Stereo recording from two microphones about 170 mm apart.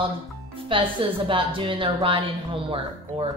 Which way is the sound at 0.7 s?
30° right (ahead or behind).